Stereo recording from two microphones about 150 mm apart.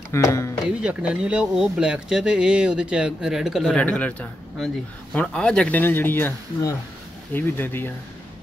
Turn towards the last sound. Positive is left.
turn(degrees=15)  # may be behind; listen again after turning